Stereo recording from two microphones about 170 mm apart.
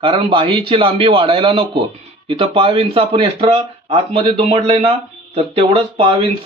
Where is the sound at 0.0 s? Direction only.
30° right (ahead or behind).